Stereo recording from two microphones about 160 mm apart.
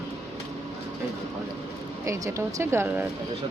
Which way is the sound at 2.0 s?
20° right (ahead or behind).